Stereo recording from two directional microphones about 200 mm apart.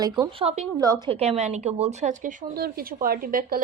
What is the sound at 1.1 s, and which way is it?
A woman's voice, 30° right (ahead or behind).